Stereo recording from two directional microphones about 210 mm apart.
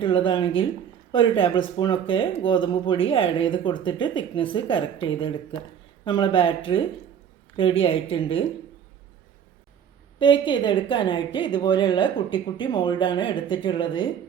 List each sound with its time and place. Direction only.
0.0 s speech: 25° left (ahead or behind)
10.2 s speech: 25° left (ahead or behind)